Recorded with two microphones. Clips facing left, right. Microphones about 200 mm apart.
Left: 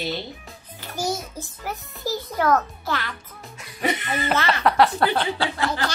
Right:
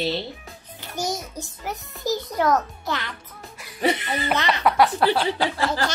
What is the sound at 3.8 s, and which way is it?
Speech, 30° right (ahead or behind).